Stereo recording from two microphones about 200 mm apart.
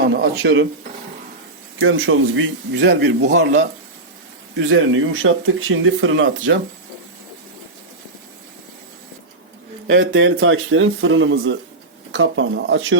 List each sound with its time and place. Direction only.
0.2 s speech: 65° right (ahead or behind)
1.8 s speech: 80° right
9.8 s speech: 65° right (ahead or behind)